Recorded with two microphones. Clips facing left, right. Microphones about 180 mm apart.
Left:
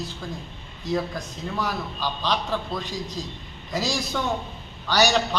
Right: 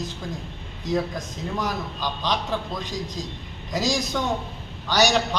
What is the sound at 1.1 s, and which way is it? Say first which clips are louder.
A man's voice: right 1 dB; 20° right (ahead or behind).